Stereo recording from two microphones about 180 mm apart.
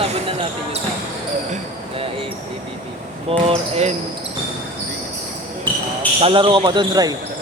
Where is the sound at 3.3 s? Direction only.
35° right (ahead or behind).